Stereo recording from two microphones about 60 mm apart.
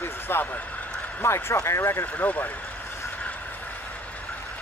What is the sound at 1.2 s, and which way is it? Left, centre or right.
Speech, left.